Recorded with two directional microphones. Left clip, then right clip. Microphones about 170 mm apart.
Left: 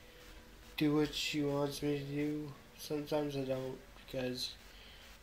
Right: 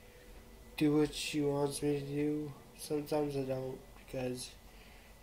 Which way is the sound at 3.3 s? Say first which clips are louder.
Right 1 dB; 5° right (ahead or behind).